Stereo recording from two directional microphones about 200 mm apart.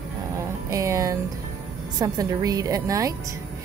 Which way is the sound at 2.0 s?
20° right (ahead or behind).